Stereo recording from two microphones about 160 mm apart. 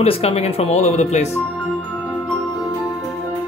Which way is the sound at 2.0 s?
10° left (ahead or behind).